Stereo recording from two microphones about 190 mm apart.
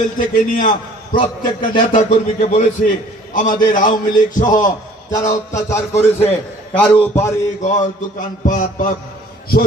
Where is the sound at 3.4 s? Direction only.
45° left (ahead or behind).